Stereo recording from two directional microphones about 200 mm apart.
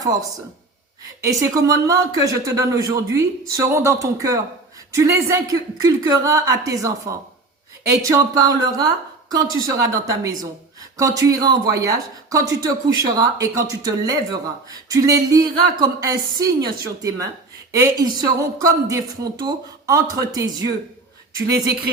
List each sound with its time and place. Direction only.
1.2 s speech: 15° right (ahead or behind)